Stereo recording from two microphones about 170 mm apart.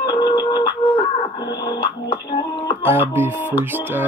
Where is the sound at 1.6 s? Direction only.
25° left (ahead or behind).